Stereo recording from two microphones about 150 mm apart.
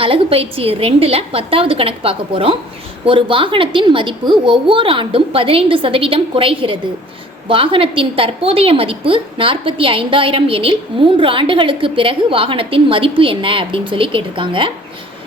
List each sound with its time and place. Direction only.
0.0 s a woman's voice: 40° right (ahead or behind)